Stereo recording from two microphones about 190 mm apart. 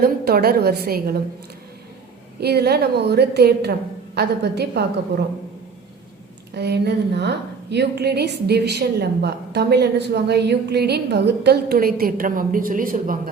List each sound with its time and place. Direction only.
0.0 s a woman's voice: 55° right (ahead or behind)
2.4 s a woman's voice: 60° right (ahead or behind)
6.5 s a woman's voice: 60° right (ahead or behind)